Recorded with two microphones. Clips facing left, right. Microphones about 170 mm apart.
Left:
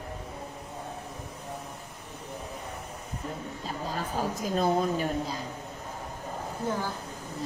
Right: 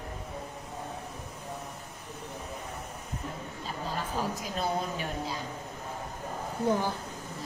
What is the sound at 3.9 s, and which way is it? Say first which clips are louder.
A woman's voice: left 2 dB; 45° left (ahead or behind).